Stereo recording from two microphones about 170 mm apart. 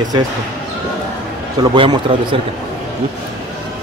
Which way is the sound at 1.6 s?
25° right (ahead or behind).